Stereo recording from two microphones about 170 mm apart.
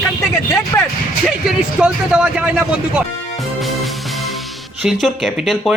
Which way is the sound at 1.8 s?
5° right (ahead or behind).